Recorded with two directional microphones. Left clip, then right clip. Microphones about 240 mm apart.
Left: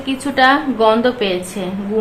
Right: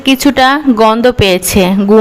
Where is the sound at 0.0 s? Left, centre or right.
Right.